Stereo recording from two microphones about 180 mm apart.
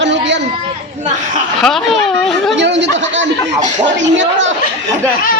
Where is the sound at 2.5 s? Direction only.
80° right.